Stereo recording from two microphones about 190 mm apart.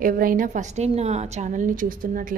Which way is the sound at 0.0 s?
45° right (ahead or behind).